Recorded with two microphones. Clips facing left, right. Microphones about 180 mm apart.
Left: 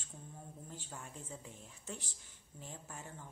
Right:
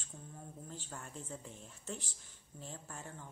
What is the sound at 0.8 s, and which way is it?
Speech, 5° left (ahead or behind).